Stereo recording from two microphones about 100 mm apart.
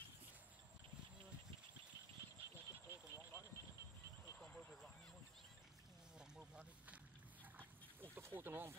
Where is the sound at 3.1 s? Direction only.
25° right (ahead or behind).